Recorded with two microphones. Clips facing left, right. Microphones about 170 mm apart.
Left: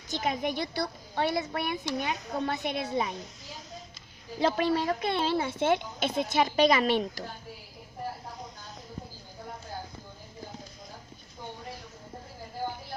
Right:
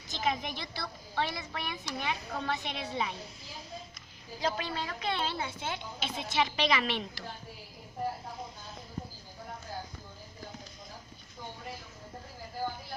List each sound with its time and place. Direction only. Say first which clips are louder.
0.2 s a woman's voice: left 3 dB; 50° left (ahead or behind)
4.4 s a woman's voice: left 8 dB; 60° left (ahead or behind); by 7.3 s 45° left (ahead or behind)